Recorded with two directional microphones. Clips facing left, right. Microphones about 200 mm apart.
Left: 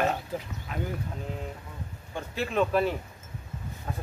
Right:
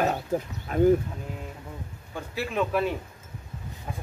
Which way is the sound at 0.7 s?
45° right (ahead or behind).